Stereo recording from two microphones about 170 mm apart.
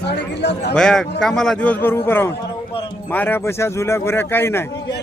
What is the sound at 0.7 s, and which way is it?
A man's voice, 5° left (ahead or behind).